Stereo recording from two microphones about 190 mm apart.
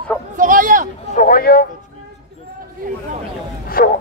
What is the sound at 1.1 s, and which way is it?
Speech, 45° left (ahead or behind).